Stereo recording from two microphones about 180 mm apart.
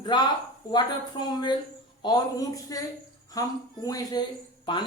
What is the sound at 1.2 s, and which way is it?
Speech, 25° left (ahead or behind).